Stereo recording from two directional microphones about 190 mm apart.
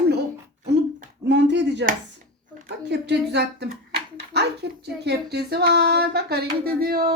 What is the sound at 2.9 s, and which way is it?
Speech, 65° right (ahead or behind).